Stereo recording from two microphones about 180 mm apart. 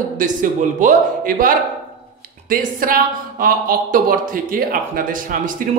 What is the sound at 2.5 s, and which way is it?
Speech, 50° right (ahead or behind).